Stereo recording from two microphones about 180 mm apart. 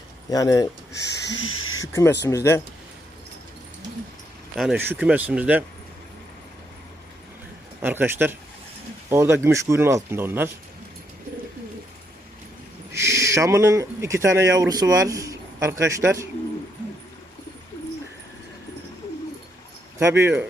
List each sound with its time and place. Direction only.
0.3 s speech: 20° left (ahead or behind)
1.5 s a sound: 90° left
1.9 s speech: 15° left (ahead or behind)
4.5 s speech: centre (ahead or behind)
7.8 s speech: 10° right (ahead or behind)
12.9 s speech: 15° right (ahead or behind)
20.0 s speech: 15° right (ahead or behind)